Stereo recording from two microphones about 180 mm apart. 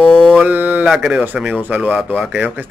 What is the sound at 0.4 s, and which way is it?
Speech, 10° right (ahead or behind).